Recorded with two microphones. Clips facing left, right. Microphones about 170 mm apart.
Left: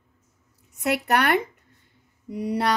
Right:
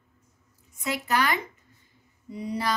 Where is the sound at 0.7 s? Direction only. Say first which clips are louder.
Left 4 dB; 65° left (ahead or behind).